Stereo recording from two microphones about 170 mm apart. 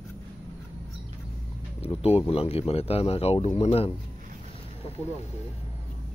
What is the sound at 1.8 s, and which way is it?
Speech, 35° left (ahead or behind).